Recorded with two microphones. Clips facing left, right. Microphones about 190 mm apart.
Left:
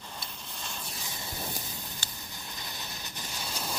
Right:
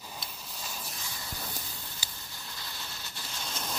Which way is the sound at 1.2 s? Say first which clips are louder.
Left 5 dB; 20° left (ahead or behind).